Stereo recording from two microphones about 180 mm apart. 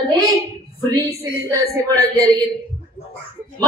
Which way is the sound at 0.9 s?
20° right (ahead or behind).